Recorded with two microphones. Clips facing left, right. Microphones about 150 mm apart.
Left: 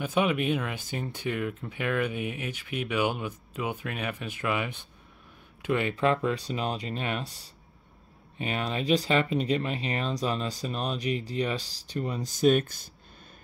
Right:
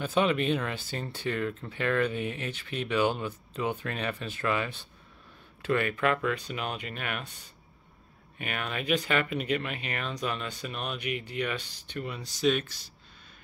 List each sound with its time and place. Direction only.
0.0 s speech: 10° left (ahead or behind); by 12.8 s 50° left (ahead or behind)